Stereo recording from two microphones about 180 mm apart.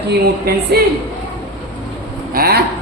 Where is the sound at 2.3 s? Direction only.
55° right (ahead or behind).